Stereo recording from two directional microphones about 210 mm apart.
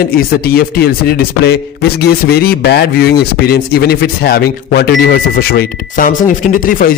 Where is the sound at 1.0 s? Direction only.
50° left (ahead or behind).